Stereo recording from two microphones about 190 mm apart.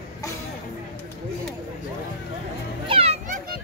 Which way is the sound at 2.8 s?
30° right (ahead or behind).